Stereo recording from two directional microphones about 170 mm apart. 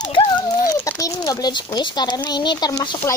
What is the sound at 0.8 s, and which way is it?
A child's voice, 20° left (ahead or behind).